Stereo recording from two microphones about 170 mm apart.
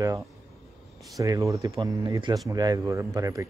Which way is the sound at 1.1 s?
20° right (ahead or behind).